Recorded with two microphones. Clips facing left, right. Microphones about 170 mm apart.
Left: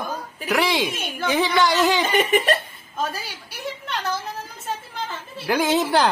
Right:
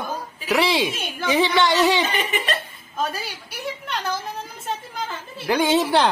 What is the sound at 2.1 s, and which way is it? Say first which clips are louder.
Speech: left 6 dB; 50° left (ahead or behind).